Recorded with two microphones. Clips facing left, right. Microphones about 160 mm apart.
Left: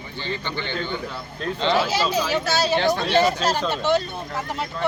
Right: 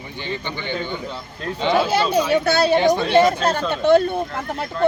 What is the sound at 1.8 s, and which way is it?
Speech, 55° right (ahead or behind).